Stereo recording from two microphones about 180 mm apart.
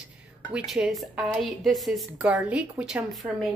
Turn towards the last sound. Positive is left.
turn(degrees=0)  # may be behind; listen again after turning